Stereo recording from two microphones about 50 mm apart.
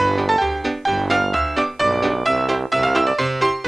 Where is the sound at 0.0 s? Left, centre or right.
Centre.